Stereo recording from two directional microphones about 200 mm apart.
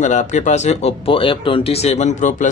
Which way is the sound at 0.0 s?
35° left (ahead or behind).